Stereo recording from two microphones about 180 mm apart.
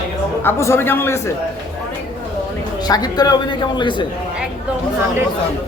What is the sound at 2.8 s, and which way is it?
Speech, 20° left (ahead or behind).